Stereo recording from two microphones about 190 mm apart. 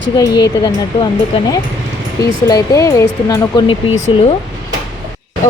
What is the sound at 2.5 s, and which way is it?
A woman's voice, 20° left (ahead or behind).